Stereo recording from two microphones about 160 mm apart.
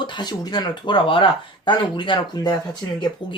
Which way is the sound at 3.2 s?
30° left (ahead or behind).